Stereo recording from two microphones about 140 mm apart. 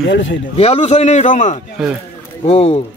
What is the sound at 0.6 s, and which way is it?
A man's voice, 50° left (ahead or behind).